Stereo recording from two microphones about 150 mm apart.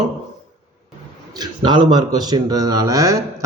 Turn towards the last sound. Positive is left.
turn(degrees=-20)  # may be behind; listen again after turning